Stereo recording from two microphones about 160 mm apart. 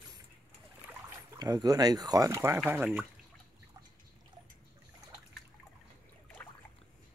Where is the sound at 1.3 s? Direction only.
25° right (ahead or behind).